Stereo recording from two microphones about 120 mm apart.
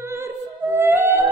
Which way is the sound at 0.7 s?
20° right (ahead or behind).